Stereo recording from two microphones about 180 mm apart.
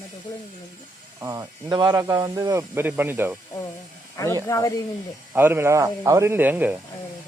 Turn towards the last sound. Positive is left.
turn(degrees=-10)  # may be behind; listen again after turning